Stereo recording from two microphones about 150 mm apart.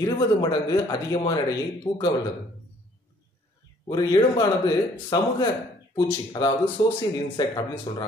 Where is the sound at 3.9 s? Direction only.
25° left (ahead or behind).